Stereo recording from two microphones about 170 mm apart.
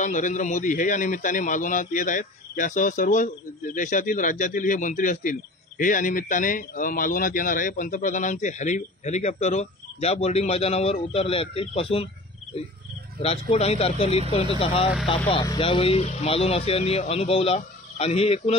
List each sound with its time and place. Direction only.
0.0 s a man's voice: 45° left (ahead or behind)
13.2 s speech: 35° left (ahead or behind)